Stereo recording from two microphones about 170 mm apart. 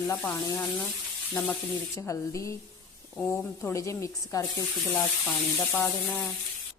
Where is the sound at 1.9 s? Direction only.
20° left (ahead or behind).